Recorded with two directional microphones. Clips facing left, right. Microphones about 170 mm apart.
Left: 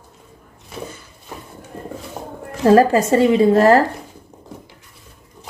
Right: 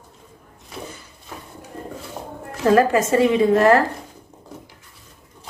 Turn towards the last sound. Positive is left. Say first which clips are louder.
# left 3 dB
turn(degrees=30)  # may be behind; listen again after turning